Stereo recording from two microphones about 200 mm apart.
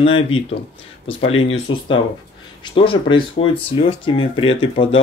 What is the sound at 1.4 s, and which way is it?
Speech, 25° left (ahead or behind).